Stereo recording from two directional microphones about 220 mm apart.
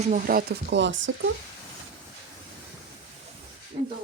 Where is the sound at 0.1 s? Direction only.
40° right (ahead or behind); by 1.3 s 55° right (ahead or behind).